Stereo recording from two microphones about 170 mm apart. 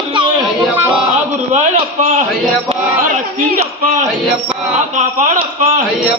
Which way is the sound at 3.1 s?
45° right (ahead or behind).